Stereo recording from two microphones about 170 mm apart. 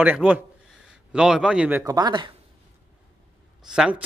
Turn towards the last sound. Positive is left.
turn(degrees=-5)  # may be behind; listen again after turning